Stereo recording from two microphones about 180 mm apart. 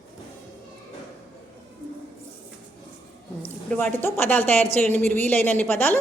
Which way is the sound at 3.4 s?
10° left (ahead or behind).